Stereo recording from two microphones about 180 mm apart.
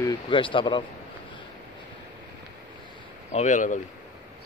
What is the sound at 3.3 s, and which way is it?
Speech, 45° left (ahead or behind).